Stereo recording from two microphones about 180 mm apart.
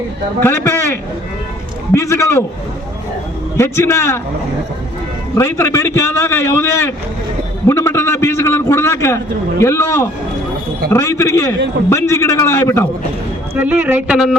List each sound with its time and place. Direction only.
0.4 s a man's voice: 15° left (ahead or behind)
1.9 s a man's voice: 15° left (ahead or behind)
3.6 s a man's voice: 15° left (ahead or behind)
5.3 s a man's voice: 15° left (ahead or behind)
13.6 s speech: 10° right (ahead or behind)